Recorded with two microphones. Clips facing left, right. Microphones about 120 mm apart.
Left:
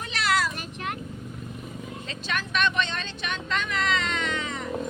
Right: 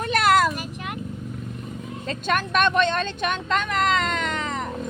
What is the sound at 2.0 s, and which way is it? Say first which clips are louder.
Speech: right 9 dB; 50° right (ahead or behind).